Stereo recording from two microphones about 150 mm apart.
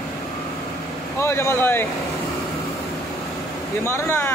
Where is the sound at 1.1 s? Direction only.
15° left (ahead or behind).